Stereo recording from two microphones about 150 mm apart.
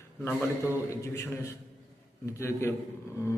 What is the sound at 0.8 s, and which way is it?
A man's voice, 20° left (ahead or behind).